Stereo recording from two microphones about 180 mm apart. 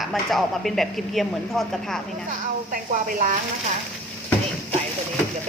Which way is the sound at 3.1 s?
50° right (ahead or behind).